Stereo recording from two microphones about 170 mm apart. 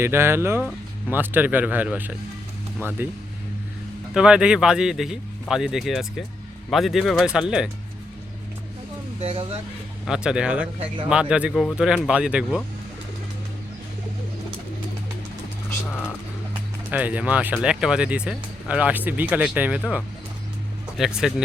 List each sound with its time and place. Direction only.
0.0 s speech: 15° right (ahead or behind)
4.1 s speech: 5° right (ahead or behind)
9.2 s speech: 30° right (ahead or behind)
10.1 s speech: 5° right (ahead or behind)
15.9 s a sound: 10° left (ahead or behind)
16.9 s speech: 10° right (ahead or behind)
21.0 s speech: 5° right (ahead or behind)